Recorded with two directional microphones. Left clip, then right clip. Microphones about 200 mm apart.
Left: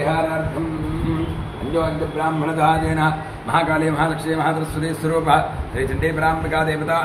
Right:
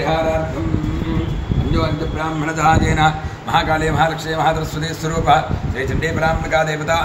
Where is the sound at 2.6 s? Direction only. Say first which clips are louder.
Right 4 dB; 30° right (ahead or behind).